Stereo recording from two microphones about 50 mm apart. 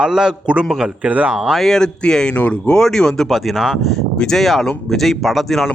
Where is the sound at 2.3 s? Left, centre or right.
Left.